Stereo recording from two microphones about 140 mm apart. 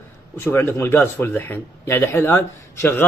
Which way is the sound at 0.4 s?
15° left (ahead or behind).